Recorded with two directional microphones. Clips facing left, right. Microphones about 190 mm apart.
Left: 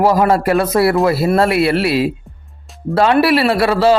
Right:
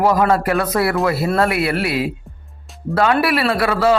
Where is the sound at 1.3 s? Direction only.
30° left (ahead or behind).